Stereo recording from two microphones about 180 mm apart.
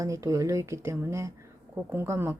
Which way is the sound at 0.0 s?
15° right (ahead or behind).